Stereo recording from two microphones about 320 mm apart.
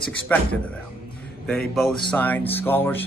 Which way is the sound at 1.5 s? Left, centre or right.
Centre.